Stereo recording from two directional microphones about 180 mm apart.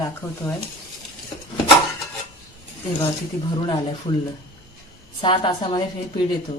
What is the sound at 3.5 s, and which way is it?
Speech, 25° left (ahead or behind).